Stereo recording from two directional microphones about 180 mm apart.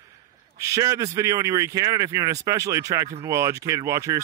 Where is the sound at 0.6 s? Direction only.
15° right (ahead or behind).